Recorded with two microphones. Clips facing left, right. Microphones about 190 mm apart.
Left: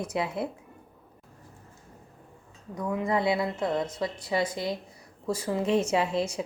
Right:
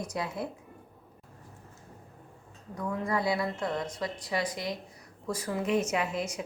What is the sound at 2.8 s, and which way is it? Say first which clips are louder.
A woman's voice: left 3 dB; 20° left (ahead or behind).